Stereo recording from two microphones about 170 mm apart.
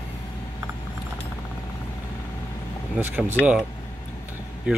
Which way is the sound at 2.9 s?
10° right (ahead or behind).